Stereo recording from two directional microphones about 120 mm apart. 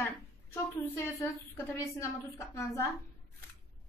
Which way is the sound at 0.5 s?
25° left (ahead or behind).